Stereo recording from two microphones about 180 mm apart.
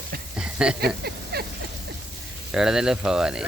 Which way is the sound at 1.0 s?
60° right (ahead or behind).